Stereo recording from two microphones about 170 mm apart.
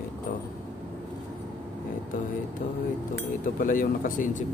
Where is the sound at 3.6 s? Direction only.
55° left (ahead or behind).